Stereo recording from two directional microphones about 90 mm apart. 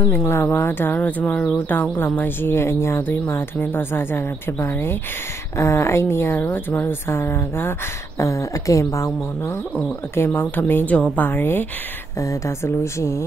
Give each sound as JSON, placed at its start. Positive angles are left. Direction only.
{"t": 0.1, "sound": "speech", "side_deg": 25}
{"t": 8.2, "sound": "speech", "side_deg": 35}
{"t": 12.2, "sound": "speech", "side_deg": 35}